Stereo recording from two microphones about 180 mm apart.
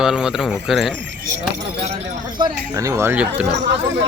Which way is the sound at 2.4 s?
20° right (ahead or behind).